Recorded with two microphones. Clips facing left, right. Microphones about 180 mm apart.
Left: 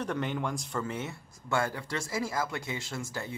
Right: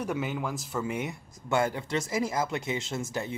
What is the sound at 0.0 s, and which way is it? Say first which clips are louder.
Speech: right 1 dB; 5° right (ahead or behind).